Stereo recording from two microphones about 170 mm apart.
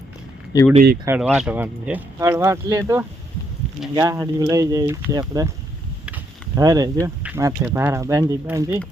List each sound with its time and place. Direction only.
0.5 s speech: 20° left (ahead or behind)
1.0 s speech: 10° right (ahead or behind)
6.6 s speech: 20° right (ahead or behind)